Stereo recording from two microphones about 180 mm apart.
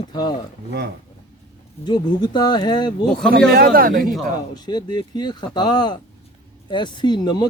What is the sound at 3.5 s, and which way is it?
Speech, 55° right (ahead or behind).